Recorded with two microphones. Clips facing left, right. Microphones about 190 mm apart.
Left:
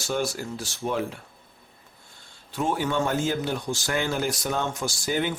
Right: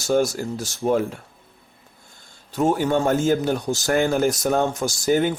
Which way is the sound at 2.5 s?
40° right (ahead or behind).